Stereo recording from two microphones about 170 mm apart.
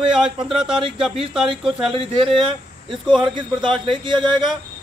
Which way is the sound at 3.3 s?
30° right (ahead or behind).